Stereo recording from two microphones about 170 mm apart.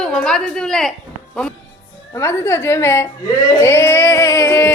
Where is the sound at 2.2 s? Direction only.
15° left (ahead or behind).